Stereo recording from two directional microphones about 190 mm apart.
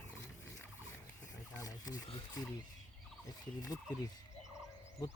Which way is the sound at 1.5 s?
20° left (ahead or behind).